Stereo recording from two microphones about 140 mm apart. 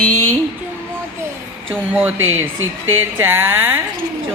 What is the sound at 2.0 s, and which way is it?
Speech, 15° right (ahead or behind).